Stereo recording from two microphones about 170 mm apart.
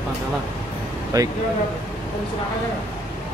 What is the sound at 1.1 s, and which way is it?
Speech, 20° right (ahead or behind).